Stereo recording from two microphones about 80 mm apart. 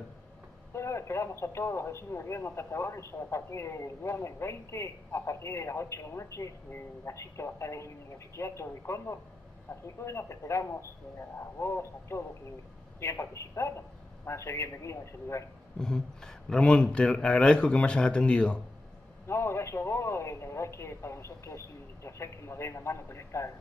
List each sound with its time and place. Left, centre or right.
0.7 s speech: left
15.8 s speech: centre
19.2 s speech: left